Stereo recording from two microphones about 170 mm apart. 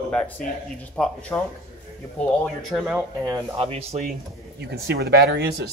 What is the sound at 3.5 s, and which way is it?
Speech, 35° right (ahead or behind).